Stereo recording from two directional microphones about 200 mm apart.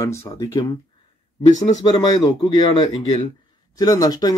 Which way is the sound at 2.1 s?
20° left (ahead or behind).